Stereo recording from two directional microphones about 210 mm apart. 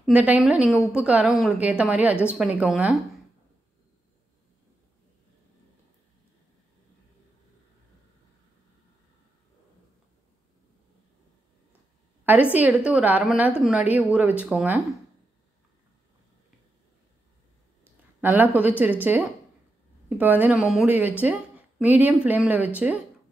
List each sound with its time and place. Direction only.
0.0 s a woman's voice: 5° right (ahead or behind)
12.5 s a woman's voice: 5° right (ahead or behind)
18.2 s a woman's voice: 10° right (ahead or behind)